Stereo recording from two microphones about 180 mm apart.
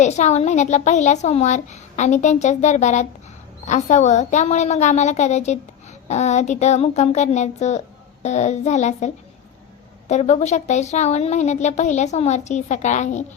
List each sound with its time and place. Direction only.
0.0 s a woman's voice: 40° left (ahead or behind)